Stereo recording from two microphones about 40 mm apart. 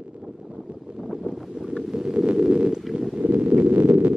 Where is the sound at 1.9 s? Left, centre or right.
Centre.